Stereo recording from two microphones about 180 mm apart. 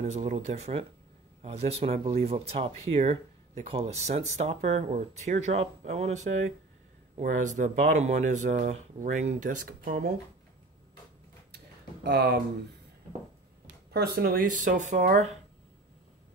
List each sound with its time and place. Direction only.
0.1 s speech: 40° right (ahead or behind); by 10.1 s 55° right (ahead or behind)
12.0 s speech: 65° right (ahead or behind)
13.9 s speech: 60° right (ahead or behind); by 15.3 s 40° right (ahead or behind)